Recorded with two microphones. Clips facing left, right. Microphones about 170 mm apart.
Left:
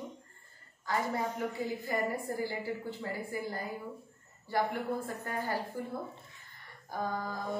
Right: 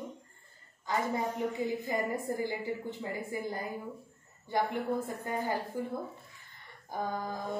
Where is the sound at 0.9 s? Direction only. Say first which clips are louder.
Right 1 dB; 20° right (ahead or behind).